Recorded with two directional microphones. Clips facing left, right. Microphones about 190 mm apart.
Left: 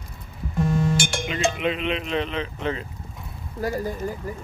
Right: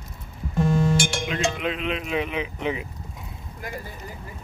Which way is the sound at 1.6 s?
Centre (ahead or behind).